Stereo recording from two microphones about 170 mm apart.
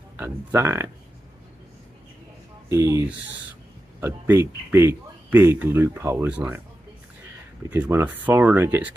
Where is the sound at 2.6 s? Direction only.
15° right (ahead or behind).